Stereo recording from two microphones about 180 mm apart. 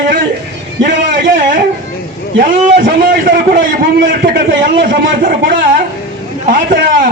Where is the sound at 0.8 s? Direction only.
50° right (ahead or behind).